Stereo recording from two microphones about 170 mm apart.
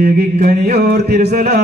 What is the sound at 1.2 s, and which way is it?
Music, 70° right (ahead or behind).